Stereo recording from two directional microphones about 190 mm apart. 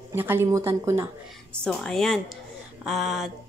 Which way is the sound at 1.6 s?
5° left (ahead or behind).